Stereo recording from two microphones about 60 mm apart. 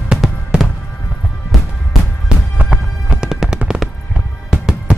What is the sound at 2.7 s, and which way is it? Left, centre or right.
Music, centre.